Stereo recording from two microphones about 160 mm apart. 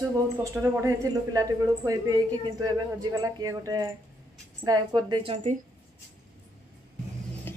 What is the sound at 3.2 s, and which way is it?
A man's voice, 20° right (ahead or behind).